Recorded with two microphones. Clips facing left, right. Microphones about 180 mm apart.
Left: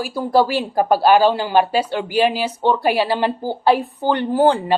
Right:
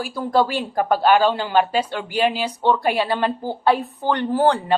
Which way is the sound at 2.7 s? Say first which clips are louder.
Left 3 dB; 30° left (ahead or behind).